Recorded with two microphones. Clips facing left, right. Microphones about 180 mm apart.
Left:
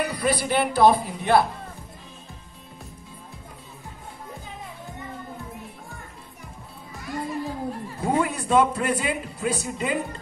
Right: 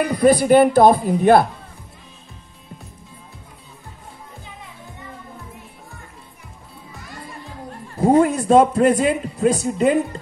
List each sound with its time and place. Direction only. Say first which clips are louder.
0.0 s speech: right 9 dB; 45° right (ahead or behind)
8.0 s speech: right 10 dB; 40° right (ahead or behind)